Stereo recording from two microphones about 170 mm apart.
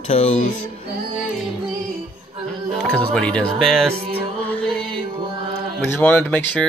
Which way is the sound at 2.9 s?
5° left (ahead or behind).